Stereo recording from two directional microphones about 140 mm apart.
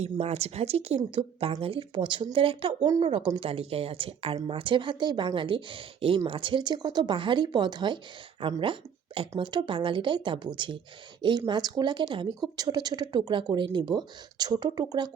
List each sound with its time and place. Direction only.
0.0 s speech: 50° right (ahead or behind); by 15.1 s 30° right (ahead or behind)